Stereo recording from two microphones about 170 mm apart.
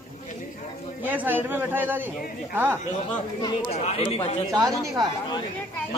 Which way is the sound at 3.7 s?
40° left (ahead or behind).